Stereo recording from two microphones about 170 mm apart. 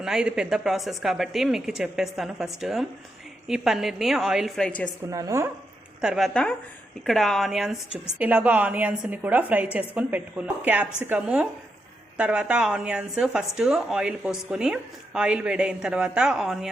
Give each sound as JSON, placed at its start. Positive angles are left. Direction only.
{"t": 0.0, "sound": "a woman's voice", "side_deg": -5}
{"t": 5.1, "sound": "speech", "side_deg": -20}
{"t": 6.0, "sound": "a woman's voice", "side_deg": 0}